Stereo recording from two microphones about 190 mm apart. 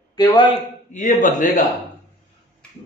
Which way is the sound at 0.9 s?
45° left (ahead or behind).